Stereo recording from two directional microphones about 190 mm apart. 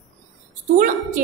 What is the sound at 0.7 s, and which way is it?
Speech, 45° right (ahead or behind).